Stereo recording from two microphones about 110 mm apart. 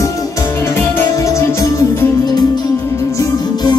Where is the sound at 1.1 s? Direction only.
30° left (ahead or behind).